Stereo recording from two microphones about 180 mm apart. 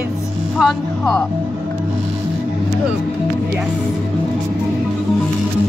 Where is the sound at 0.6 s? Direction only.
5° left (ahead or behind).